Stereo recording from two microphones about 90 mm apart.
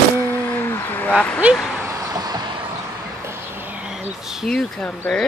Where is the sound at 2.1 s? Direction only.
45° right (ahead or behind).